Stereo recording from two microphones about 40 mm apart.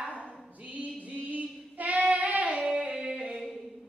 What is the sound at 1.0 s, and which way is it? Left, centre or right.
Music, right.